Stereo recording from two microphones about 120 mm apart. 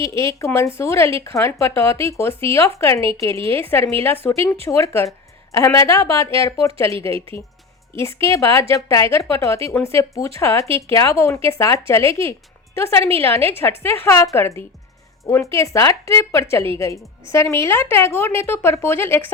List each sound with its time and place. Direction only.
0.0 s speech: 25° left (ahead or behind)
7.9 s speech: 25° left (ahead or behind)